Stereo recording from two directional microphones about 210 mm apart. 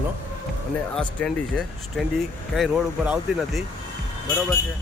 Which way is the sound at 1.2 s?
Centre (ahead or behind).